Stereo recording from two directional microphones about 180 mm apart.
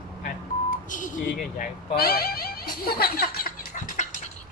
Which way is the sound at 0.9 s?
45° left (ahead or behind).